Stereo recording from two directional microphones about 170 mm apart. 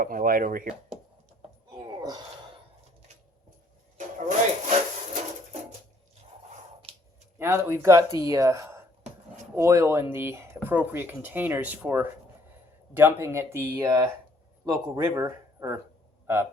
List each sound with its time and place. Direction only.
0.0 s speech: 55° right (ahead or behind)
3.9 s speech: 45° right (ahead or behind)
7.3 s a man's voice: 15° right (ahead or behind)